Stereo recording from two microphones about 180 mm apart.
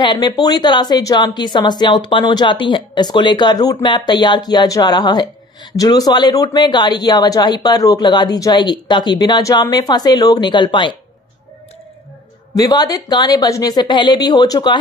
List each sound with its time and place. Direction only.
0.0 s speech: 25° left (ahead or behind)
12.5 s speech: 20° left (ahead or behind)